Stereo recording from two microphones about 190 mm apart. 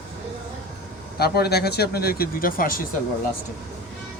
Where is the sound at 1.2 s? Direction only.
55° left (ahead or behind).